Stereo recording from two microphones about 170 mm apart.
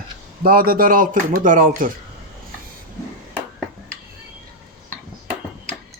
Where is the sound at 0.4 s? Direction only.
60° right (ahead or behind).